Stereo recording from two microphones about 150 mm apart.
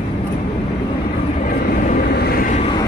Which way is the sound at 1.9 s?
90° left.